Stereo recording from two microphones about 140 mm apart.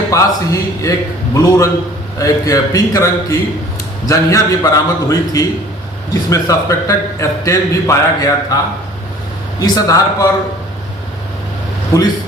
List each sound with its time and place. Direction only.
0.1 s speech: 25° left (ahead or behind)
9.6 s speech: 25° left (ahead or behind)